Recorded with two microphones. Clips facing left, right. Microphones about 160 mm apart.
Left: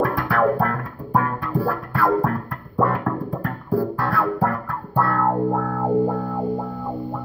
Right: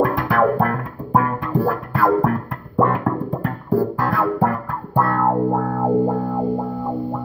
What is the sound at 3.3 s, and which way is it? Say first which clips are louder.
Music: right 3 dB; 20° right (ahead or behind).